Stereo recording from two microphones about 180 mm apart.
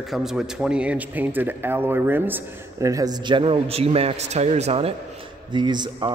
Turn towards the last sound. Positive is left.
turn(degrees=-25)  # may be behind; listen again after turning